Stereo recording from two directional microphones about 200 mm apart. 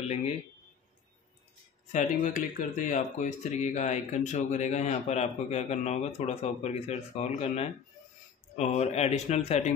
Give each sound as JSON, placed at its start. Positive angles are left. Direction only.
{"t": 1.9, "sound": "speech", "side_deg": 40}